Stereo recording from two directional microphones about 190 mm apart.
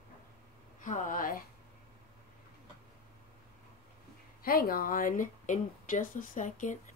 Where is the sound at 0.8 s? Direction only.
45° left (ahead or behind).